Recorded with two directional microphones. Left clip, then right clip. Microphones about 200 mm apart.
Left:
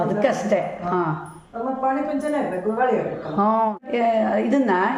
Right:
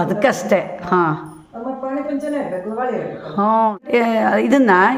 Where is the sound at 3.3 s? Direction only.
15° right (ahead or behind).